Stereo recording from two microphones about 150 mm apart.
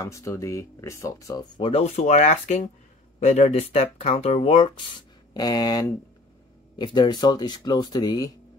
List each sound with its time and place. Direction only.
0.0 s speech: 20° left (ahead or behind)
1.6 s speech: 45° left (ahead or behind); by 8.3 s 25° left (ahead or behind)